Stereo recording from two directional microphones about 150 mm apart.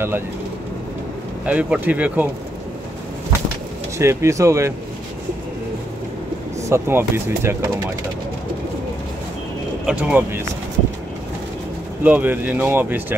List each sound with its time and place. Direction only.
1.4 s speech: 10° right (ahead or behind)
4.0 s speech: 20° right (ahead or behind)
6.7 s speech: 15° right (ahead or behind)
9.8 s speech: 10° right (ahead or behind)
12.0 s speech: 10° right (ahead or behind)